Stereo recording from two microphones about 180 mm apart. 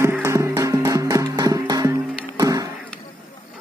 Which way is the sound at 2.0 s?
5° left (ahead or behind).